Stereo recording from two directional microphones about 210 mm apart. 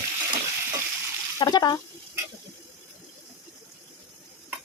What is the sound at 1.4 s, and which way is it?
Speech, 20° left (ahead or behind).